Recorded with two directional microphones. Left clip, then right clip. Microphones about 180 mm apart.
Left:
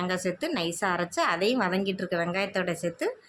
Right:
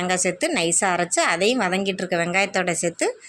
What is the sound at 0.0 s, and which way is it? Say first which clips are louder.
A woman's voice: right 7 dB; 15° right (ahead or behind).